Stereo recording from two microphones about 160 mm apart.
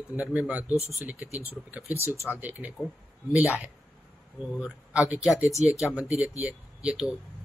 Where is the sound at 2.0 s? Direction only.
20° left (ahead or behind).